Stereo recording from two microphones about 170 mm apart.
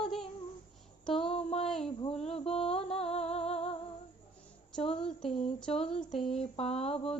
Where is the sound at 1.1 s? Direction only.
35° left (ahead or behind).